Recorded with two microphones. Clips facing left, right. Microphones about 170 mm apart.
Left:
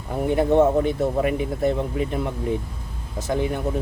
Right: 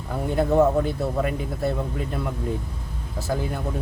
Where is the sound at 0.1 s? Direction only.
15° left (ahead or behind).